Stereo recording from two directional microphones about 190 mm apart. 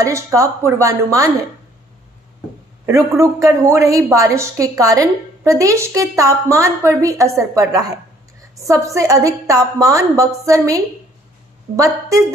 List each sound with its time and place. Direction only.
0.0 s a woman's voice: 15° right (ahead or behind)
2.9 s a woman's voice: 15° right (ahead or behind)